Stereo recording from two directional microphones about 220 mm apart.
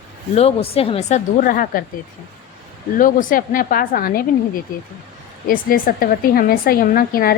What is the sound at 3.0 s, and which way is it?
A woman's voice, 40° left (ahead or behind).